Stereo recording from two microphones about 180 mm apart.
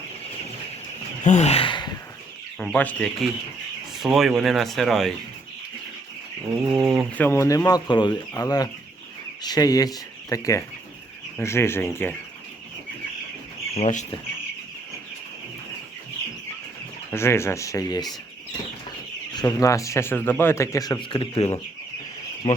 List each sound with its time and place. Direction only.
1.2 s gasp: 40° left (ahead or behind)
2.6 s speech: 10° left (ahead or behind)
6.7 s speech: centre (ahead or behind)
7.3 s speech: 15° left (ahead or behind)
13.7 s speech: 40° left (ahead or behind)
17.1 s speech: 15° left (ahead or behind)
19.3 s speech: 20° left (ahead or behind)